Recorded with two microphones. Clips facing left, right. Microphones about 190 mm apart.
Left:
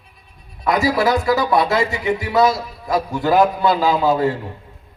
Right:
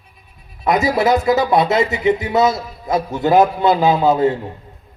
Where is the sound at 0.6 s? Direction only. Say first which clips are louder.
Right 2 dB; 20° right (ahead or behind).